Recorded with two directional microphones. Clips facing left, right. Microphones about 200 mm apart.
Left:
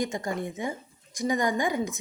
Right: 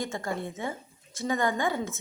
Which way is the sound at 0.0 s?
15° left (ahead or behind).